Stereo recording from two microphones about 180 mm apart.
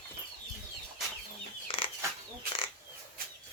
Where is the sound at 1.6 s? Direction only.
30° left (ahead or behind).